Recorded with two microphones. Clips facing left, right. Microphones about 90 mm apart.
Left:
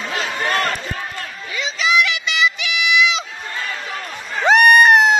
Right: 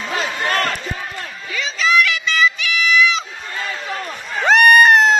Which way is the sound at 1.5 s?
20° left (ahead or behind).